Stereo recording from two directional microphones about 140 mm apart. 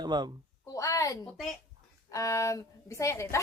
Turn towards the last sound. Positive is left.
turn(degrees=20)  # may be behind; listen again after turning